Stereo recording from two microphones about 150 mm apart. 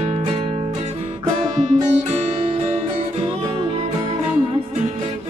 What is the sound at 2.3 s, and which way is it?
Music, 35° right (ahead or behind).